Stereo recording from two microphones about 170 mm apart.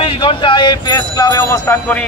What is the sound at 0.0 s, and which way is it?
Speech, 30° left (ahead or behind).